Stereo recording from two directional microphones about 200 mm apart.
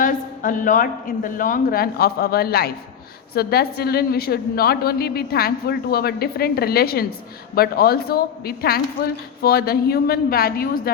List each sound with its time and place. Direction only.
0.0 s a woman's voice: 40° left (ahead or behind)